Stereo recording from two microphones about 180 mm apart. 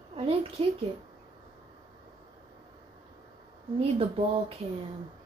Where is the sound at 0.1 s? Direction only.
30° right (ahead or behind).